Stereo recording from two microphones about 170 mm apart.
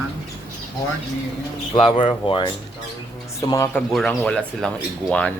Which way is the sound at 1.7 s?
30° left (ahead or behind).